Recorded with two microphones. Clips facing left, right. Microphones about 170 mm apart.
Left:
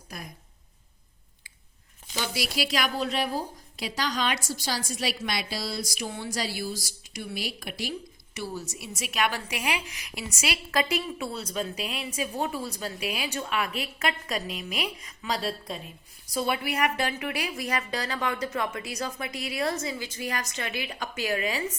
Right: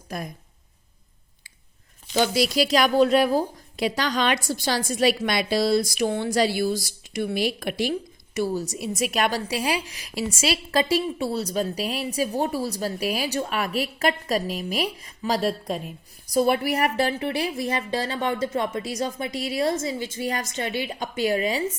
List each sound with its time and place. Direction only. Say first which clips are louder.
2.6 s a woman's voice: right 7 dB; 40° right (ahead or behind)
3.8 s a woman's voice: right 6 dB; 55° right (ahead or behind)
8.5 s a woman's voice: right 9 dB; 35° right (ahead or behind)